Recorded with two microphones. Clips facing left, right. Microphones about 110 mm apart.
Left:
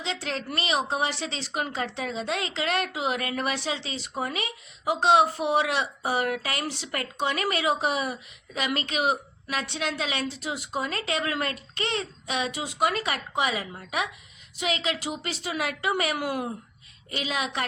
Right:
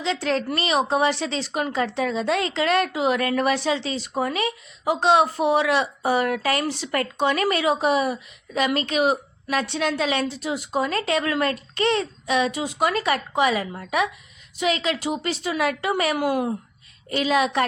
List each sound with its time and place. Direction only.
0.0 s a woman's voice: 45° right (ahead or behind); by 16.5 s 25° right (ahead or behind)
17.1 s a woman's voice: 40° right (ahead or behind)